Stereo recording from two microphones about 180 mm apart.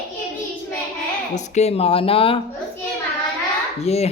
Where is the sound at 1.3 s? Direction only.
35° left (ahead or behind).